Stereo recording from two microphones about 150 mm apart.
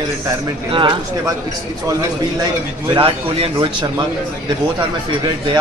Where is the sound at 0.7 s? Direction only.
30° right (ahead or behind).